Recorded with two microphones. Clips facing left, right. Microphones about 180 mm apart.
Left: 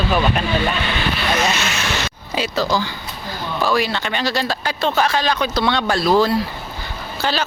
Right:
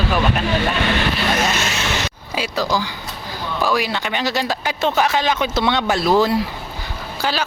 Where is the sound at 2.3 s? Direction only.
10° right (ahead or behind).